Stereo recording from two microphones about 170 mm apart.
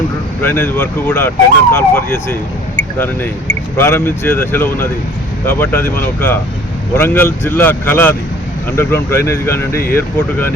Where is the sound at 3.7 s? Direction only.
15° left (ahead or behind).